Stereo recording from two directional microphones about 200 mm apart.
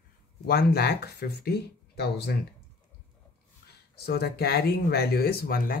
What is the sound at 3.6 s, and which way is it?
Speech, 55° left (ahead or behind).